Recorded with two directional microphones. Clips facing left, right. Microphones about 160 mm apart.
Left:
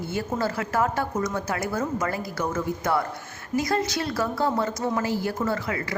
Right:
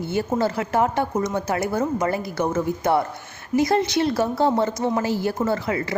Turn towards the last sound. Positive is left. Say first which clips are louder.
# right 4 dB
turn(degrees=-25)  # may be behind; listen again after turning